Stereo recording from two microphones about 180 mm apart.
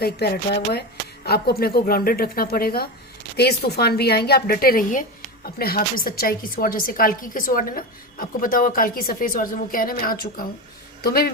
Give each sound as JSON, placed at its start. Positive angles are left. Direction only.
{"t": 0.0, "sound": "a woman's voice", "side_deg": 60}